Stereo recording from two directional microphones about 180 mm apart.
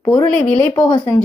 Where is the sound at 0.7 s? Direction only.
20° left (ahead or behind).